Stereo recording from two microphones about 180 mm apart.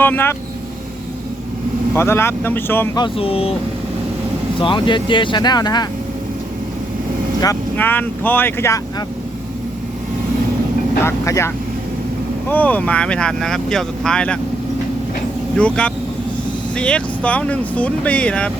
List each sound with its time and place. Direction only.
0.0 s speech: 10° left (ahead or behind)
1.9 s speech: 15° left (ahead or behind)
3.0 s speech: 30° left (ahead or behind)
4.6 s speech: 25° left (ahead or behind)
7.4 s speech: 10° left (ahead or behind)
11.0 s speech: 15° left (ahead or behind)
15.5 s speech: 5° left (ahead or behind)